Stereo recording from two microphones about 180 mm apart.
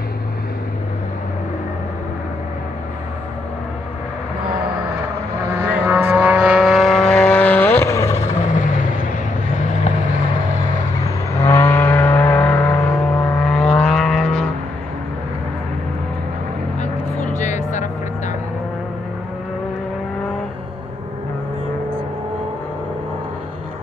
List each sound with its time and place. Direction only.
5.6 s vehicle: 10° right (ahead or behind); by 8.2 s 15° left (ahead or behind)
11.1 s vehicle: 15° left (ahead or behind)
16.8 s vehicle: 40° left (ahead or behind)